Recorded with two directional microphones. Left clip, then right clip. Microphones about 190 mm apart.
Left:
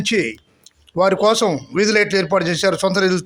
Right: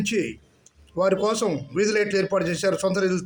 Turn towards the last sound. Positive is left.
turn(degrees=20)  # may be behind; listen again after turning